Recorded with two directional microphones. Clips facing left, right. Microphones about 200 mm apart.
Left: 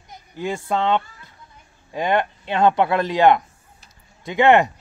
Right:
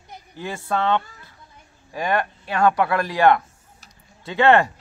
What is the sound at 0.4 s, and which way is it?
A man's voice, 15° left (ahead or behind).